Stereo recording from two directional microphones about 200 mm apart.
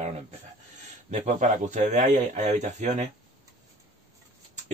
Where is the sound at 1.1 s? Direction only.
40° right (ahead or behind).